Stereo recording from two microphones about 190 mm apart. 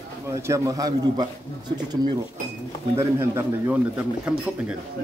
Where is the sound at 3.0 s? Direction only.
15° right (ahead or behind).